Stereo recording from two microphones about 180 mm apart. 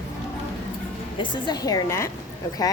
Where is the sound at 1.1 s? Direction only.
25° left (ahead or behind).